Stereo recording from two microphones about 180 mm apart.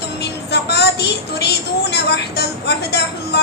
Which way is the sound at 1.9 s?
65° left (ahead or behind).